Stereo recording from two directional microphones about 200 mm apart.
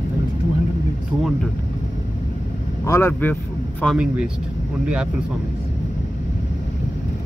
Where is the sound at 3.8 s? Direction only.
5° right (ahead or behind).